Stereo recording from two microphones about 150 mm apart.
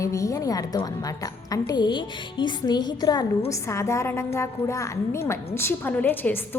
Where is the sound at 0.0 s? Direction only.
20° left (ahead or behind).